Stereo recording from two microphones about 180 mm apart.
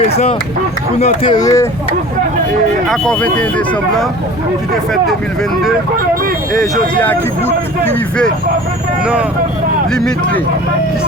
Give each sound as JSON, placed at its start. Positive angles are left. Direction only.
{"t": 0.0, "sound": "speech", "side_deg": 35}
{"t": 2.9, "sound": "speech", "side_deg": 5}
{"t": 7.0, "sound": "speech", "side_deg": 10}
{"t": 9.9, "sound": "speech", "side_deg": 5}